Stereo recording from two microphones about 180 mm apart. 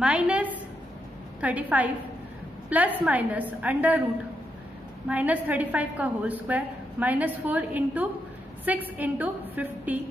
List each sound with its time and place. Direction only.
0.0 s a woman's voice: 5° right (ahead or behind)
5.0 s a woman's voice: 10° right (ahead or behind)